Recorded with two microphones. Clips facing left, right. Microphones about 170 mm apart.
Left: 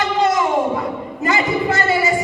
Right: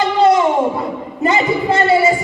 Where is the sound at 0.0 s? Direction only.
30° right (ahead or behind).